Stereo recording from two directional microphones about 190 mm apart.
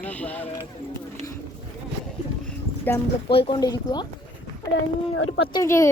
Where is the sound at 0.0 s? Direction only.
10° left (ahead or behind).